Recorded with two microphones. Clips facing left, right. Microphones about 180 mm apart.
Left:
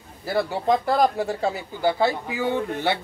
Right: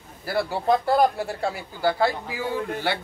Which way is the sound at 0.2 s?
20° left (ahead or behind).